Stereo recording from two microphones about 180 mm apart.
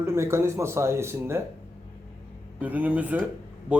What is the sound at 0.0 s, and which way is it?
Speech, 15° right (ahead or behind).